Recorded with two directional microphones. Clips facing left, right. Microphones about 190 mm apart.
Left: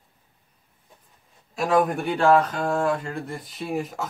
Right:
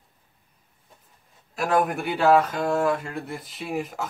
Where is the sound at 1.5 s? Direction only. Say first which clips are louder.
Left 2 dB; centre (ahead or behind).